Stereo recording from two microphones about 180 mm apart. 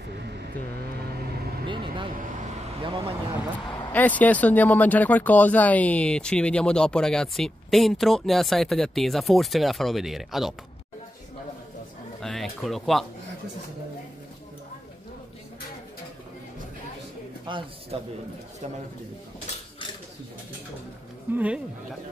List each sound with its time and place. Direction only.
0.2 s vehicle: 65° right (ahead or behind)
1.7 s vehicle: 25° right (ahead or behind)
3.9 s speech: 10° left (ahead or behind)
12.2 s speech: centre (ahead or behind)
17.5 s a man's voice: 25° right (ahead or behind)
21.3 s speech: 10° right (ahead or behind)